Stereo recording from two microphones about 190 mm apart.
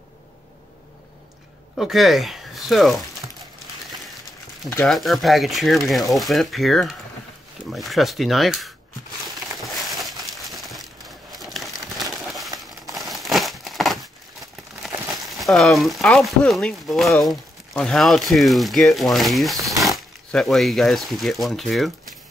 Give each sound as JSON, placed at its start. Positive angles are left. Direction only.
{"t": 1.8, "sound": "speech", "side_deg": 0}
{"t": 3.2, "sound": "a sound", "side_deg": -20}
{"t": 4.8, "sound": "speech", "side_deg": 0}
{"t": 9.7, "sound": "a sound", "side_deg": 0}
{"t": 11.3, "sound": "crumpling", "side_deg": 0}
{"t": 15.2, "sound": "speech", "side_deg": 0}